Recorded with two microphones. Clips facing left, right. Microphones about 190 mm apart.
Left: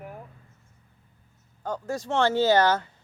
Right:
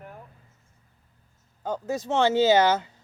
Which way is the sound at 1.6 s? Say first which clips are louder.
Right 2 dB; 20° right (ahead or behind).